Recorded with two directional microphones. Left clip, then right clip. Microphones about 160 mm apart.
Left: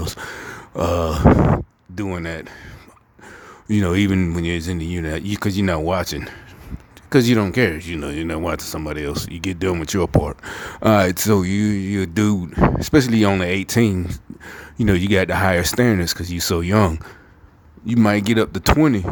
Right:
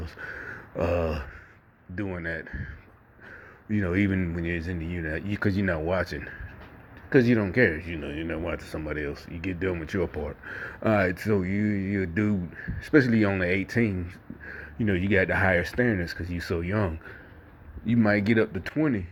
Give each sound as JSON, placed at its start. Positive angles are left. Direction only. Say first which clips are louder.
{"t": 0.0, "sound": "a sound", "louder": "left 8 dB", "side_deg": 40}
{"t": 2.1, "sound": "speech", "louder": "left 4 dB", "side_deg": 30}
{"t": 3.7, "sound": "speech", "louder": "left 7 dB", "side_deg": 40}